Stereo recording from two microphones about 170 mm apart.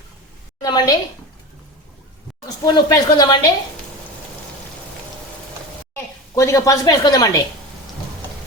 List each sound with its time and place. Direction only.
0.6 s a woman's voice: 25° left (ahead or behind)
2.6 s a woman's voice: 25° left (ahead or behind)
5.9 s speech: 15° left (ahead or behind)